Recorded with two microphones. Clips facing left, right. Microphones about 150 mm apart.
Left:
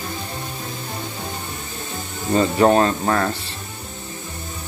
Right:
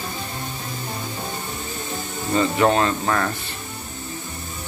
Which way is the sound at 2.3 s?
30° left (ahead or behind).